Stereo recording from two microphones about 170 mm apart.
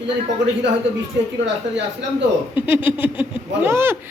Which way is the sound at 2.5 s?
10° right (ahead or behind).